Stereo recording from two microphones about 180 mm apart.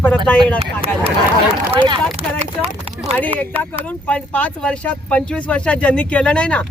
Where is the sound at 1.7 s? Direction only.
30° right (ahead or behind).